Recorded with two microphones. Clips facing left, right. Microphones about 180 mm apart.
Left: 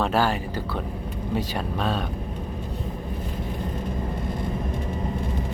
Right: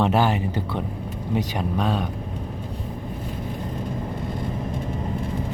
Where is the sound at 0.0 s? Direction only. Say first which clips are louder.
Right 2 dB; 20° right (ahead or behind).